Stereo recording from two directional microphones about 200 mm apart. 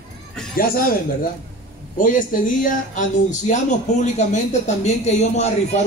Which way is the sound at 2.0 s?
40° left (ahead or behind).